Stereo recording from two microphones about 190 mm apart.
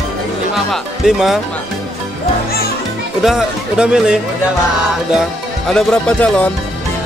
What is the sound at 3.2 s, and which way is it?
Speech, 5° right (ahead or behind).